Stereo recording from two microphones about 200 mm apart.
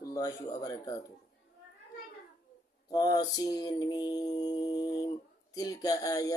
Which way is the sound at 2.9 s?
20° left (ahead or behind).